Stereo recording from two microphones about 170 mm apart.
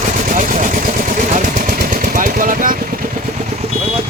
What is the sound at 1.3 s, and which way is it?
Machine gun, 50° right (ahead or behind).